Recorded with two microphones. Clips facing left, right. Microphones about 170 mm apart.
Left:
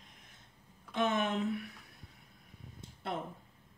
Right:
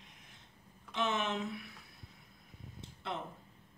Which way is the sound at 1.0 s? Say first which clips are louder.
Left 3 dB; 55° left (ahead or behind).